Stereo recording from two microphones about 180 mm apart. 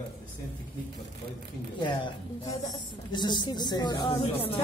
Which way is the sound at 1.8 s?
25° left (ahead or behind).